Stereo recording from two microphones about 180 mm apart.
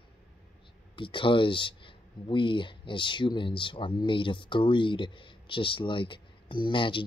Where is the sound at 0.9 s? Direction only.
30° left (ahead or behind).